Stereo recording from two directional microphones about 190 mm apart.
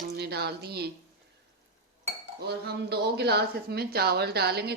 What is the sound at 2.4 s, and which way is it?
Speech, 60° right (ahead or behind).